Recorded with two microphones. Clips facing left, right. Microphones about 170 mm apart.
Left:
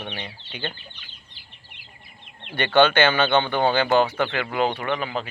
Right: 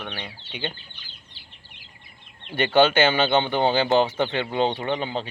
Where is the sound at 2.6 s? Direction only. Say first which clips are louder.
Even; 20° right (ahead or behind).